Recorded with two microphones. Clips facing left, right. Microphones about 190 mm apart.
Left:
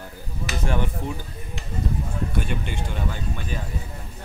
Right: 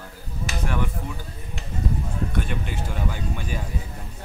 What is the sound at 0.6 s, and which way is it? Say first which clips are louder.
Speech: left 2 dB; 30° left (ahead or behind).